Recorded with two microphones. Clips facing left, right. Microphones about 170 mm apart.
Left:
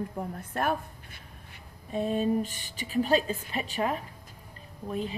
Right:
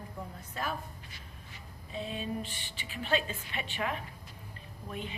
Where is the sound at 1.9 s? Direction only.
45° left (ahead or behind).